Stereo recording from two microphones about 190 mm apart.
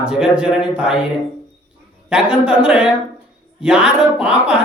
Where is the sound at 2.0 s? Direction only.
5° right (ahead or behind).